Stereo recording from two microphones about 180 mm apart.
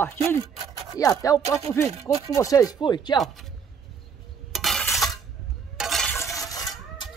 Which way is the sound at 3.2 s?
Centre (ahead or behind).